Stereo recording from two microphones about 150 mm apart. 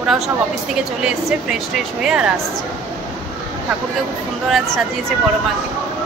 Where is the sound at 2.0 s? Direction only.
5° right (ahead or behind).